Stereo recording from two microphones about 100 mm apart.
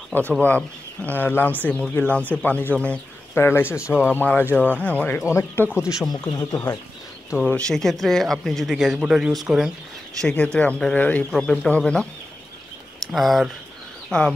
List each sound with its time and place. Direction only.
0.4 s speech: 15° left (ahead or behind)
3.3 s speech: 25° left (ahead or behind)
5.7 s speech: 10° right (ahead or behind)
6.0 s speech: 40° left (ahead or behind)
7.3 s speech: 10° left (ahead or behind)
10.2 s speech: 10° left (ahead or behind)
13.0 s speech: centre (ahead or behind)